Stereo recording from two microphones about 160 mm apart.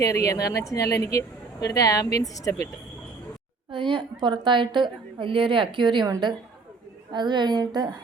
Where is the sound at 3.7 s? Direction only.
30° right (ahead or behind).